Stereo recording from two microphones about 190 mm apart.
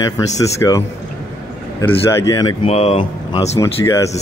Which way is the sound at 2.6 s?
35° left (ahead or behind).